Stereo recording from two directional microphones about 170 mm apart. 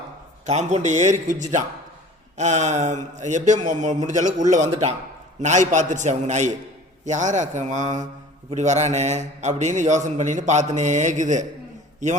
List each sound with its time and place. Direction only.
0.4 s a man's voice: 40° right (ahead or behind)